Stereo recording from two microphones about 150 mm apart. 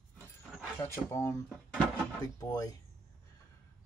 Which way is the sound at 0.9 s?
20° left (ahead or behind).